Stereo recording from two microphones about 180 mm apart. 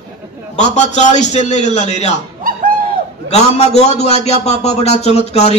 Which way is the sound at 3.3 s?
35° left (ahead or behind).